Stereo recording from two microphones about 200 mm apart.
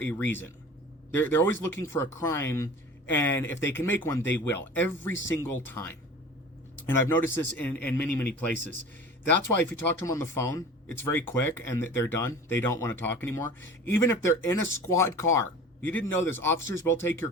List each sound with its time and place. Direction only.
0.0 s speech: 10° left (ahead or behind)
10.0 s speech: 10° left (ahead or behind)